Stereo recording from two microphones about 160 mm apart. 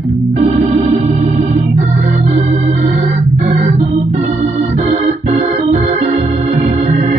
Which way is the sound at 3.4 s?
45° right (ahead or behind).